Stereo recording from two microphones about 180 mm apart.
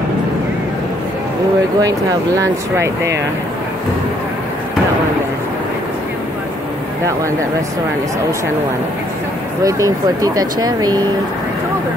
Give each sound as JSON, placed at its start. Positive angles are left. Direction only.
{"t": 1.8, "sound": "speech", "side_deg": -20}
{"t": 9.6, "sound": "speech", "side_deg": -20}